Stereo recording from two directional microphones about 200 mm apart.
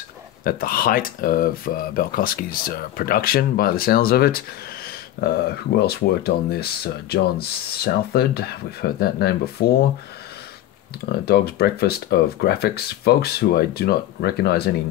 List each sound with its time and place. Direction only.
0.4 s speech: 45° left (ahead or behind)
5.8 s speech: 50° left (ahead or behind)
11.1 s speech: 50° left (ahead or behind)